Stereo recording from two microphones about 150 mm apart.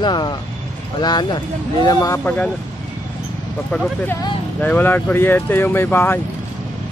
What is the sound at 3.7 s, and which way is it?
Speech, 10° left (ahead or behind).